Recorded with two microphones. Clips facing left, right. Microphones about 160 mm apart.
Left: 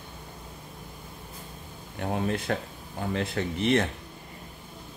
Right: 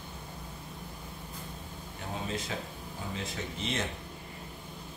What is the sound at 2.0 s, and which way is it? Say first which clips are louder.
Speech: left 8 dB; 60° left (ahead or behind).